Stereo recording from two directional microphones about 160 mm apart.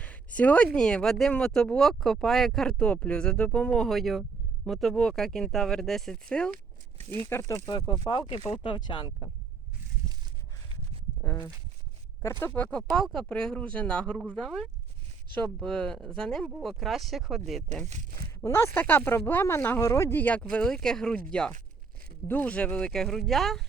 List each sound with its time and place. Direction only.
0.0 s speech: 10° left (ahead or behind)
7.0 s speech: 35° right (ahead or behind)
7.3 s speech: 15° left (ahead or behind)
12.2 s speech: 15° left (ahead or behind); by 17.6 s centre (ahead or behind)
18.4 s speech: 15° left (ahead or behind)